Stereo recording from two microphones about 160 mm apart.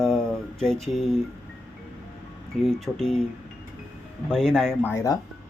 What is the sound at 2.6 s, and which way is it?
Speech, 5° left (ahead or behind).